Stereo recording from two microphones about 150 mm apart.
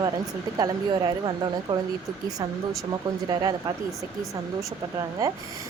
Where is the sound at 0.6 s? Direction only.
30° right (ahead or behind).